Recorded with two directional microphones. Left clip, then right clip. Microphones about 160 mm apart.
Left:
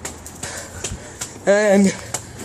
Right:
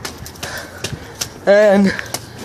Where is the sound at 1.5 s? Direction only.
20° left (ahead or behind).